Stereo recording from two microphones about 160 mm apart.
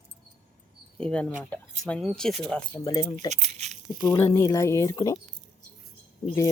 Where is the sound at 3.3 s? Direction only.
45° right (ahead or behind).